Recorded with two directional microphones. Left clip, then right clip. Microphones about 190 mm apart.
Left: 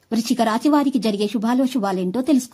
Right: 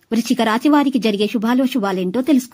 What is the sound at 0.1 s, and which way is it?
Speech, 15° right (ahead or behind).